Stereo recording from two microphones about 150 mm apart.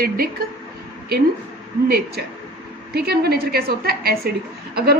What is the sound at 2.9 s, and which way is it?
A woman's voice, 90° right.